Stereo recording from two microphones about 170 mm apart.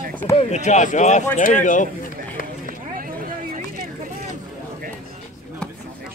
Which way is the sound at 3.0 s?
55° right (ahead or behind).